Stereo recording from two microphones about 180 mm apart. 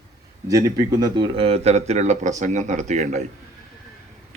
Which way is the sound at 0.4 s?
20° right (ahead or behind).